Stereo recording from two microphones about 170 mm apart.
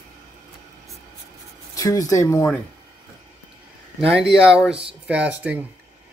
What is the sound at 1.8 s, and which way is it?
Speech, 20° left (ahead or behind).